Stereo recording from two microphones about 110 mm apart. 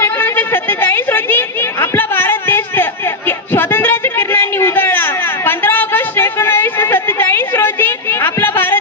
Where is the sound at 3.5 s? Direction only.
20° left (ahead or behind).